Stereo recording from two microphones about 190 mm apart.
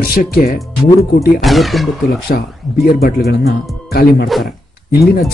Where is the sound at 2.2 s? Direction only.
55° left (ahead or behind).